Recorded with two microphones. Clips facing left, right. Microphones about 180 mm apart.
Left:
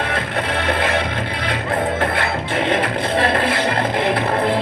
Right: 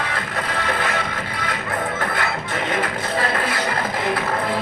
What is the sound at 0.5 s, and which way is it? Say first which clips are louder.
Music: left 4 dB; 25° left (ahead or behind).